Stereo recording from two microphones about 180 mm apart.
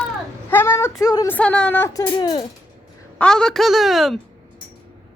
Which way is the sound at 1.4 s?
5° left (ahead or behind).